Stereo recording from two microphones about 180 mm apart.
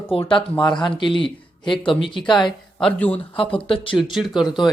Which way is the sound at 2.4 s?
Centre (ahead or behind).